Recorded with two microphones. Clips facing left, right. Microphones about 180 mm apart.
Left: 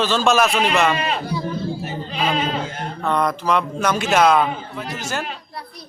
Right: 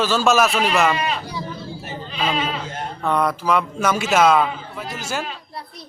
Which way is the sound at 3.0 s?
5° right (ahead or behind).